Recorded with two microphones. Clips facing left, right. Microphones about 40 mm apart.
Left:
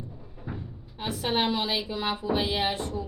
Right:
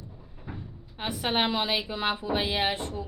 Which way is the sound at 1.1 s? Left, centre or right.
Right.